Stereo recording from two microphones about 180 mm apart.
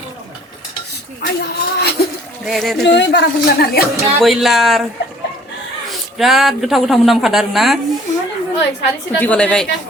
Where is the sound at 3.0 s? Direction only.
75° left (ahead or behind).